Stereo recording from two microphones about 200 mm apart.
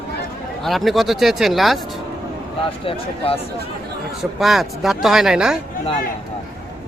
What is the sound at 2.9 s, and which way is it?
Speech, 25° left (ahead or behind).